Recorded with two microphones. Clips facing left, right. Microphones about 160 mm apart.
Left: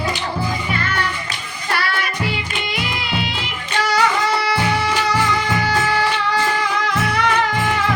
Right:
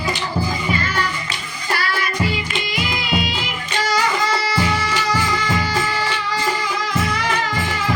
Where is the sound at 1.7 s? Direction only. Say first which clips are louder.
Even; 65° left (ahead or behind).